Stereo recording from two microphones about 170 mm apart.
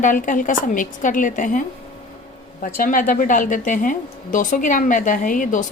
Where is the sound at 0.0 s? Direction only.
50° left (ahead or behind).